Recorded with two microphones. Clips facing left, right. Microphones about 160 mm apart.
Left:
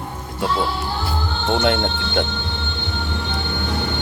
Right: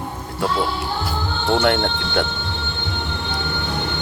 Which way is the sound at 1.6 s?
20° left (ahead or behind).